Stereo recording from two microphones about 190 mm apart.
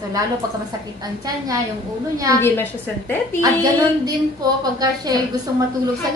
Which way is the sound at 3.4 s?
20° right (ahead or behind).